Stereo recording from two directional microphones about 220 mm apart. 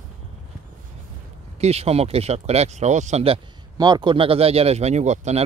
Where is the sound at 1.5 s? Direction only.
30° right (ahead or behind).